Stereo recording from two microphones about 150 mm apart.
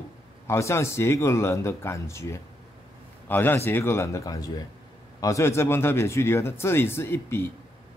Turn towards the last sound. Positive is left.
turn(degrees=15)  # may be behind; listen again after turning